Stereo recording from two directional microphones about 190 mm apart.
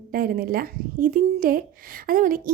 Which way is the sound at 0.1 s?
50° right (ahead or behind).